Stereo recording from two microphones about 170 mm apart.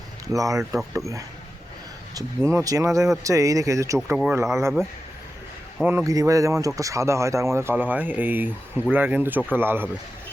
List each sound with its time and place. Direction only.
0.3 s speech: 20° right (ahead or behind)
0.6 s speech: centre (ahead or behind)
0.9 s speech: 20° right (ahead or behind)
5.8 s speech: 15° right (ahead or behind)